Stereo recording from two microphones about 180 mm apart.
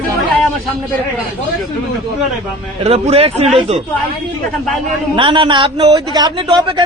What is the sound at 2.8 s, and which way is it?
Speech, 35° right (ahead or behind).